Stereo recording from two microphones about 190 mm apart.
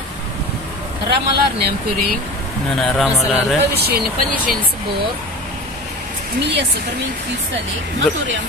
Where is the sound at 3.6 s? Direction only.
55° right (ahead or behind).